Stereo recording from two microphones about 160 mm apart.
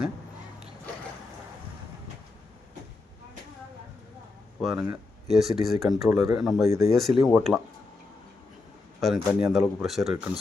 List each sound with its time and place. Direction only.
4.7 s speech: 5° right (ahead or behind)
6.7 s speech: 20° right (ahead or behind)
6.9 s speech: centre (ahead or behind)
9.0 s speech: centre (ahead or behind)